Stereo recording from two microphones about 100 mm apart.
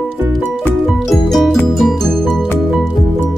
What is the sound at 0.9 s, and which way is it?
Music, centre (ahead or behind).